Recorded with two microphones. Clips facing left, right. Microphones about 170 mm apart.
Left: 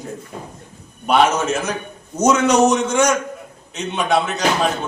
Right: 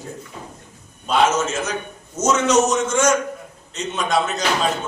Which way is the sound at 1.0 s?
60° left (ahead or behind).